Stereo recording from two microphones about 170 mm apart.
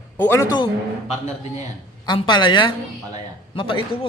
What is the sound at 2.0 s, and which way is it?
A man's voice, 25° left (ahead or behind).